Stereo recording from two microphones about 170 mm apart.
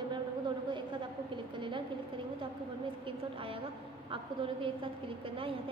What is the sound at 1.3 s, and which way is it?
Speech, 30° right (ahead or behind).